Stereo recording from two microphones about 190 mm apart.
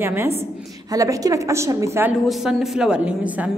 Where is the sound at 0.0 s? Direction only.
10° right (ahead or behind).